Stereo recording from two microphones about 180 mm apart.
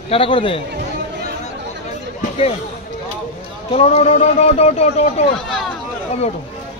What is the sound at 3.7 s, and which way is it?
A man's voice, 35° left (ahead or behind).